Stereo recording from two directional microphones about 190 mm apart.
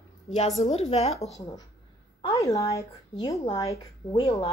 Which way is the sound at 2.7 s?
15° left (ahead or behind).